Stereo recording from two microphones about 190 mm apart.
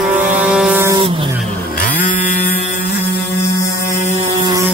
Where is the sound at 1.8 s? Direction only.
45° left (ahead or behind).